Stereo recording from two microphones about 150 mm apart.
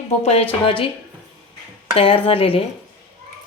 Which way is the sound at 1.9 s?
35° left (ahead or behind).